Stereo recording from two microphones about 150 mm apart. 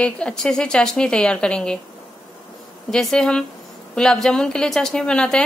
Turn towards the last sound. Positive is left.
turn(degrees=5)  # may be behind; listen again after turning